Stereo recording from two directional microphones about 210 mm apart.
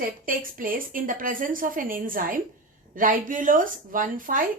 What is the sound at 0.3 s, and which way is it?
A woman's voice, 40° right (ahead or behind).